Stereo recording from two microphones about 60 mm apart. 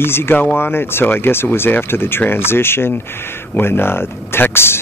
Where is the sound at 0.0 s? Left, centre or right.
Left.